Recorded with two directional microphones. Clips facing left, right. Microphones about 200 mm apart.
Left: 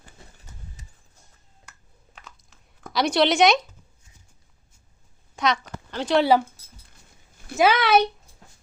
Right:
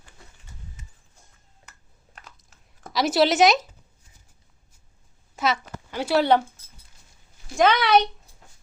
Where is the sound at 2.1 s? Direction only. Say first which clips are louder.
Left 1 dB; centre (ahead or behind).